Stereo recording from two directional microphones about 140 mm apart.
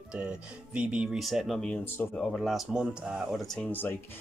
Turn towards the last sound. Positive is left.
turn(degrees=10)  # may be behind; listen again after turning